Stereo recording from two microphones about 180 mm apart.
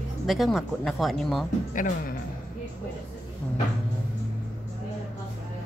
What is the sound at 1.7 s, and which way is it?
Speech, 50° left (ahead or behind).